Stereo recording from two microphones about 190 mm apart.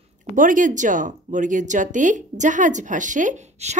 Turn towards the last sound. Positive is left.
turn(degrees=-35)  # may be behind; listen again after turning